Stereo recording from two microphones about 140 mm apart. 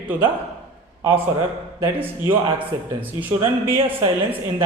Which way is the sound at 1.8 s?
15° right (ahead or behind).